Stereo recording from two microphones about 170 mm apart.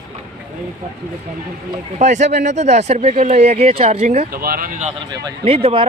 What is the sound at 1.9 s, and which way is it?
Speech, 45° right (ahead or behind).